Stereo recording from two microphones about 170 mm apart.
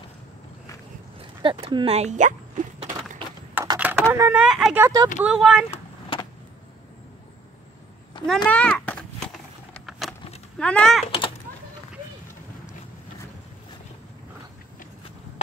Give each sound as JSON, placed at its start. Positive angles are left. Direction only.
{"t": 1.4, "sound": "speech", "side_deg": -30}
{"t": 3.7, "sound": "typing", "side_deg": -10}
{"t": 4.1, "sound": "speech", "side_deg": -10}
{"t": 4.8, "sound": "speech", "side_deg": -25}
{"t": 5.2, "sound": "a child's voice", "side_deg": -5}
{"t": 5.7, "sound": "vehicle", "side_deg": 30}
{"t": 8.2, "sound": "a sound", "side_deg": 30}
{"t": 8.5, "sound": "a sound", "side_deg": 5}
{"t": 10.6, "sound": "a child's voice", "side_deg": 5}
{"t": 11.1, "sound": "typing", "side_deg": 30}